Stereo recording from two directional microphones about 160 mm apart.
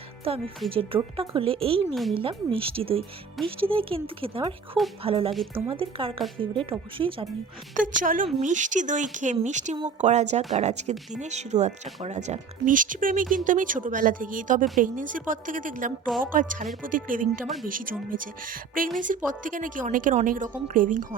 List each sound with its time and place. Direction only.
0.3 s speech: 35° right (ahead or behind)
0.6 s speech: centre (ahead or behind)
1.1 s speech: 35° right (ahead or behind)
7.7 s a woman's voice: 55° right (ahead or behind)
17.4 s speech: centre (ahead or behind)
17.7 s a woman's voice: 60° right (ahead or behind)